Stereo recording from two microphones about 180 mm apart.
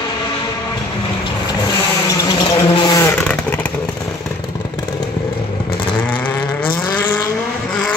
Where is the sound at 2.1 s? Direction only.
20° left (ahead or behind).